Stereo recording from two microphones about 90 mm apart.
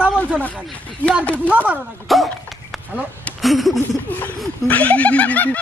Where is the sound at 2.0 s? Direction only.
Centre (ahead or behind).